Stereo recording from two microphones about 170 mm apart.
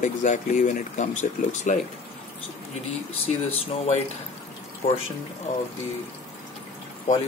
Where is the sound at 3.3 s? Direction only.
40° left (ahead or behind).